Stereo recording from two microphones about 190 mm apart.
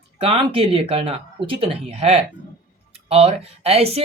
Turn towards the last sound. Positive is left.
turn(degrees=-30)  # may be behind; listen again after turning